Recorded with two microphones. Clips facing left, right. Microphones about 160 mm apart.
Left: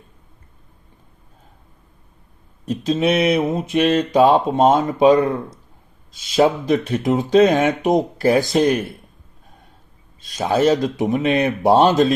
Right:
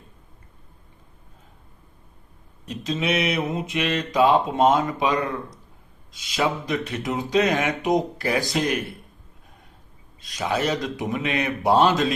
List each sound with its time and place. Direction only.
2.8 s speech: 35° left (ahead or behind)
6.3 s speech: 35° left (ahead or behind)
10.3 s speech: 30° left (ahead or behind)